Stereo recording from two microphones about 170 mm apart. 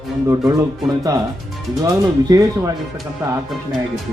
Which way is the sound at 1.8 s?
20° right (ahead or behind).